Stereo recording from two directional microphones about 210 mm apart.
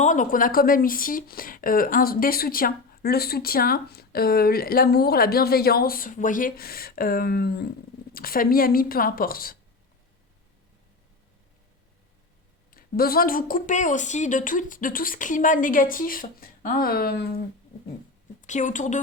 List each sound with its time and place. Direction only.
0.0 s speech: 35° left (ahead or behind)
12.7 s speech: 45° left (ahead or behind)
18.4 s speech: 35° left (ahead or behind)